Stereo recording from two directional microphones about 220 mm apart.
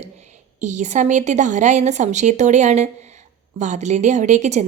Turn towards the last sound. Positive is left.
turn(degrees=-30)  # may be behind; listen again after turning